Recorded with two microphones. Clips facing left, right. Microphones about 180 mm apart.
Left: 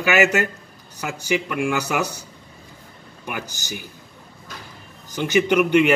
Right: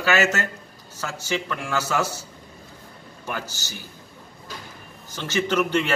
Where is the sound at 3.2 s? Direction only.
15° left (ahead or behind).